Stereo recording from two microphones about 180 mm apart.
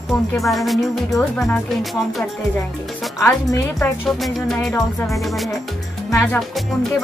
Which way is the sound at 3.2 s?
20° left (ahead or behind).